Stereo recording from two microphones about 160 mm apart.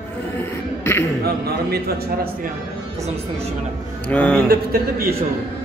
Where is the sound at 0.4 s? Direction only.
15° left (ahead or behind).